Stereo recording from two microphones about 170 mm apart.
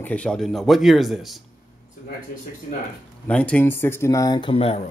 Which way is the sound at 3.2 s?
5° left (ahead or behind).